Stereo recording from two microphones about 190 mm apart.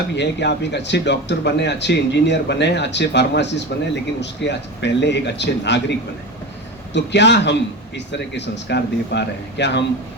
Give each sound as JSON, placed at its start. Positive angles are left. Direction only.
{"t": 0.2, "sound": "speech", "side_deg": 65}
{"t": 6.9, "sound": "a man's voice", "side_deg": 65}